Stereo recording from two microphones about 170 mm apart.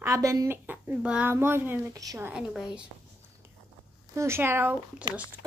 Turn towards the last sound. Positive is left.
turn(degrees=-10)  # may be behind; listen again after turning